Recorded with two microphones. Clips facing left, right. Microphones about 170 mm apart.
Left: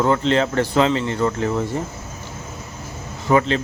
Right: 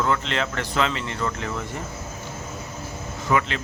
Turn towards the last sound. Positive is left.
turn(degrees=30)  # may be behind; listen again after turning